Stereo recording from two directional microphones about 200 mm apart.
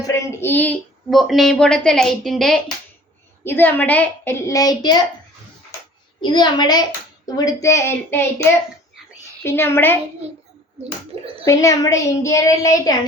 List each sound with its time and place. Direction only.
0.0 s a woman's voice: 15° left (ahead or behind)
6.2 s a woman's voice: 20° left (ahead or behind)
10.8 s speech: 30° right (ahead or behind)
11.4 s a woman's voice: 15° left (ahead or behind)